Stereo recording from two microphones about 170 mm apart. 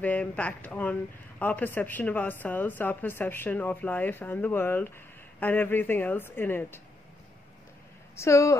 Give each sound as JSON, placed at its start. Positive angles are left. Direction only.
{"t": 0.0, "sound": "speech", "side_deg": 10}
{"t": 8.2, "sound": "speech", "side_deg": 20}